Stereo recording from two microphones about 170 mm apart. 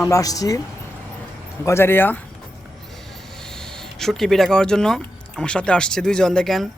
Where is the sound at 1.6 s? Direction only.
15° left (ahead or behind).